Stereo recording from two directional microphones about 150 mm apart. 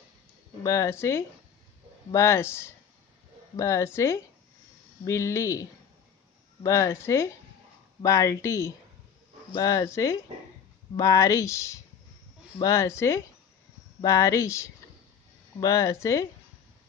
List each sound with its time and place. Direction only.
0.7 s speech: 20° left (ahead or behind)